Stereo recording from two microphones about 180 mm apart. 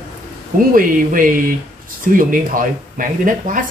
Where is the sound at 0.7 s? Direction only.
50° right (ahead or behind).